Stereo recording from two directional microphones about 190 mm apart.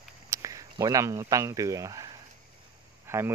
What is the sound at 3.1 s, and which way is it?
Speech, 15° right (ahead or behind).